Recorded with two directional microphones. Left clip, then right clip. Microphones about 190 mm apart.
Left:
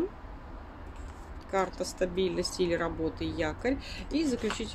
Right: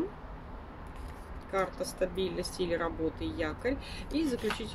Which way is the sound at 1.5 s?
25° left (ahead or behind).